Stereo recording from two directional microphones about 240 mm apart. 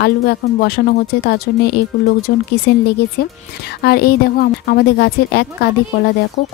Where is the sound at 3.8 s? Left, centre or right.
Left.